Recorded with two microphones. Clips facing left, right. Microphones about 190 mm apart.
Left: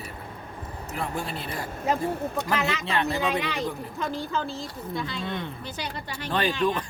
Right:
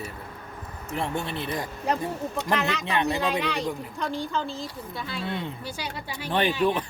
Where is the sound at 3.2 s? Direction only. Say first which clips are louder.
Even; centre (ahead or behind).